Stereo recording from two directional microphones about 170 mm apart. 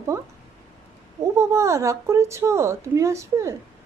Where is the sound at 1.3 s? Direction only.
15° right (ahead or behind).